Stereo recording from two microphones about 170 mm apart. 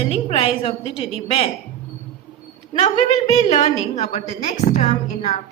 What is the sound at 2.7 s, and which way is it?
A woman's voice, 40° left (ahead or behind).